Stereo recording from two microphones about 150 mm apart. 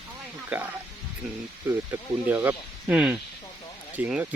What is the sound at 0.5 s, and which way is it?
Speech, 10° right (ahead or behind).